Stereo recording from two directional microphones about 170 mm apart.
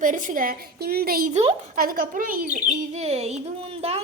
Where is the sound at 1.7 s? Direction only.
55° right (ahead or behind).